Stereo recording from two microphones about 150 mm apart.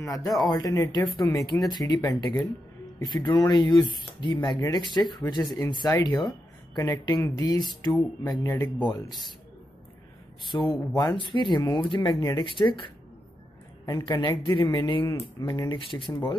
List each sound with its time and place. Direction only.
0.0 s speech: 20° left (ahead or behind)
10.4 s speech: 30° left (ahead or behind)